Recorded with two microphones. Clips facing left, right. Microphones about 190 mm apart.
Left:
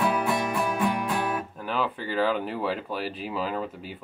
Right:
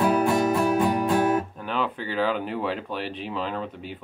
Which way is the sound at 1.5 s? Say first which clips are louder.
Right 1 dB; centre (ahead or behind).